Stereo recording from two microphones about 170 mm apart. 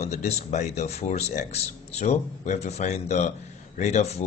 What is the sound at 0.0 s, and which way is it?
Speech, 40° left (ahead or behind).